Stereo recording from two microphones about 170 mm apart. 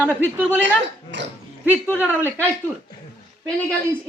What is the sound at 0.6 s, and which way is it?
Speech, 90° right.